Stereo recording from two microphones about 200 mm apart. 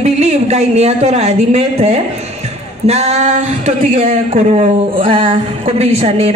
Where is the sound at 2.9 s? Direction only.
30° right (ahead or behind).